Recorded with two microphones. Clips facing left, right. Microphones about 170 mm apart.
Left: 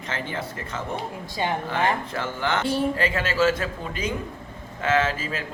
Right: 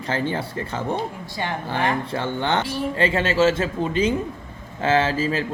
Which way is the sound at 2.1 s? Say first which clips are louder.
Right 3 dB; 30° right (ahead or behind).